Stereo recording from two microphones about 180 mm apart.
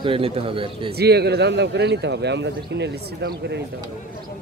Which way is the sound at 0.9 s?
65° right (ahead or behind).